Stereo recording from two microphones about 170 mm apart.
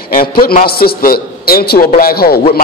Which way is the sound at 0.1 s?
60° left (ahead or behind).